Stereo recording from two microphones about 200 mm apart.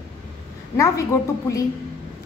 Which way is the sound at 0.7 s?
15° left (ahead or behind).